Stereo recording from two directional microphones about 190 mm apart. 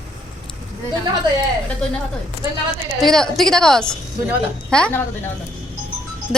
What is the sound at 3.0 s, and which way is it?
A woman's voice, centre (ahead or behind).